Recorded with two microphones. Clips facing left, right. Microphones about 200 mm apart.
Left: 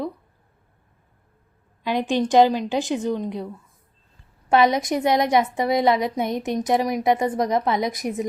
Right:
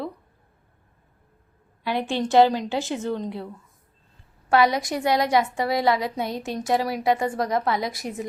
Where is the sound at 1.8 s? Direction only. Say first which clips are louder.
Left 3 dB; 15° left (ahead or behind).